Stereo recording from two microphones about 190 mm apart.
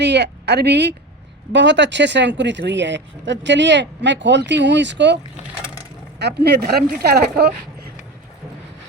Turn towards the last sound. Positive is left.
turn(degrees=-55)  # may be behind; listen again after turning